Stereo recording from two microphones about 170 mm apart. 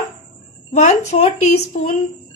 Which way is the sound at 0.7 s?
45° left (ahead or behind).